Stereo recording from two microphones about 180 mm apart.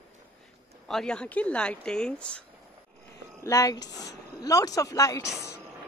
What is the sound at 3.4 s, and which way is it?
Speech, 20° left (ahead or behind).